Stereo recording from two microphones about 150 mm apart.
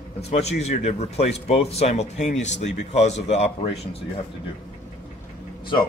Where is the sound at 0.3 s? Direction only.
45° left (ahead or behind).